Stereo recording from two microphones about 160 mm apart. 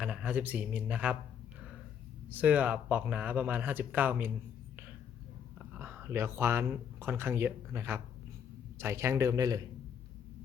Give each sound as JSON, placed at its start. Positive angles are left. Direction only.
{"t": 0.0, "sound": "a man's voice", "side_deg": -5}
{"t": 2.3, "sound": "speech", "side_deg": -10}
{"t": 5.5, "sound": "a man's voice", "side_deg": -15}